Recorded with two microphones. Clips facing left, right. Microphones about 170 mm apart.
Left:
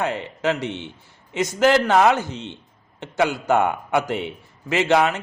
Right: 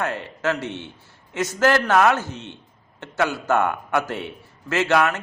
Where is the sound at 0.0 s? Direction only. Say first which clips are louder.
Left 2 dB; 15° left (ahead or behind).